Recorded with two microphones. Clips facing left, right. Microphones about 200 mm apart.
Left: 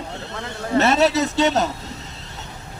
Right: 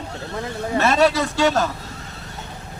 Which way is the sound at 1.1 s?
20° left (ahead or behind).